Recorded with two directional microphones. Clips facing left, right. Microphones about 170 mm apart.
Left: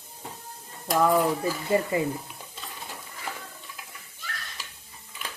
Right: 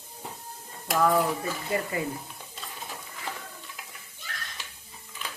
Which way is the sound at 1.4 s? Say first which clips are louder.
Left 5 dB; 25° left (ahead or behind).